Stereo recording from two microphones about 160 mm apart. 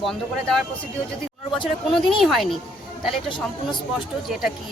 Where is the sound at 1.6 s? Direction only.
Centre (ahead or behind).